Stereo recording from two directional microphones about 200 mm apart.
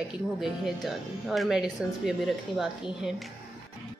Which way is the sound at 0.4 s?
Centre (ahead or behind).